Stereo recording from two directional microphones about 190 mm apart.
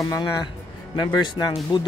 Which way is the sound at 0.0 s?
15° left (ahead or behind).